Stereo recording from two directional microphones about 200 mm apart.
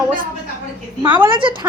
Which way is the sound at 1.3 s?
25° right (ahead or behind).